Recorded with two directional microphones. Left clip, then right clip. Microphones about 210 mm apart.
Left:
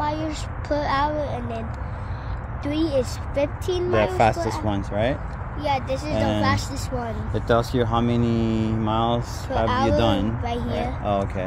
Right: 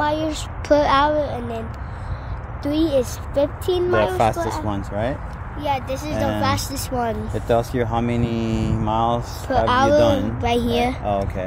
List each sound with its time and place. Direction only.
0.0 s a child's voice: 40° right (ahead or behind)
2.6 s speech: 35° right (ahead or behind)
4.6 s speech: 5° right (ahead or behind)
5.6 s speech: 25° right (ahead or behind)
6.4 s speech: 45° right (ahead or behind)
7.3 s speech: 5° left (ahead or behind)
9.5 s speech: 45° right (ahead or behind)
9.9 s speech: centre (ahead or behind)
10.4 s speech: 55° right (ahead or behind)
11.1 s speech: centre (ahead or behind)